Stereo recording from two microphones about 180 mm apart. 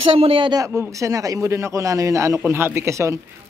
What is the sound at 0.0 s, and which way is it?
Speech, 30° right (ahead or behind).